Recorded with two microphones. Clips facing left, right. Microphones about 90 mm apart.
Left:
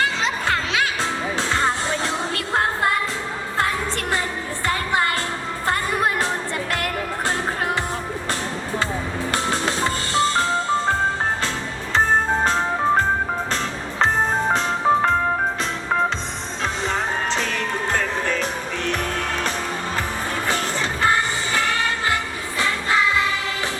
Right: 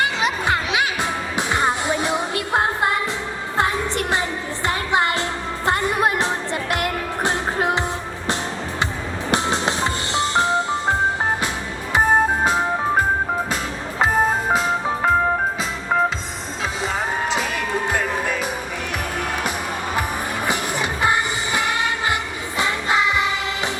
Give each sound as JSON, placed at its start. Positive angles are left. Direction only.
{"t": 0.0, "sound": "music", "side_deg": -15}
{"t": 9.3, "sound": "music", "side_deg": -20}
{"t": 11.9, "sound": "music", "side_deg": -10}
{"t": 17.2, "sound": "music", "side_deg": -10}
{"t": 20.5, "sound": "music", "side_deg": -15}